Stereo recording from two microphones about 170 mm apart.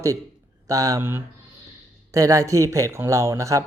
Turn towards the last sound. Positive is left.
turn(degrees=-20)  # may be behind; listen again after turning